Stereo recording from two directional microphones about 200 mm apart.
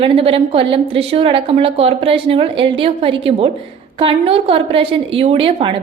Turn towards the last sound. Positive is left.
turn(degrees=-25)  # may be behind; listen again after turning